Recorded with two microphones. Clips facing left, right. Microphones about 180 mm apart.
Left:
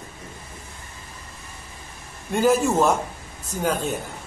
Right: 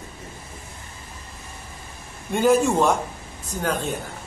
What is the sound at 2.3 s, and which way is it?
Speech, centre (ahead or behind).